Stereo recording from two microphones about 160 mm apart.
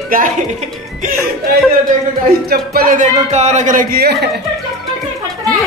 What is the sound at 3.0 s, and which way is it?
Speech, 45° right (ahead or behind).